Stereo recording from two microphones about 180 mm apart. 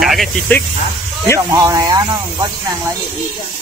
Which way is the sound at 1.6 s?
20° right (ahead or behind).